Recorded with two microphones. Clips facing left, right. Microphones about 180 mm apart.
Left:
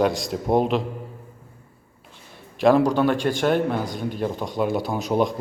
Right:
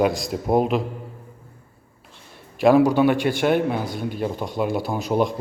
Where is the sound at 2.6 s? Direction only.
5° right (ahead or behind).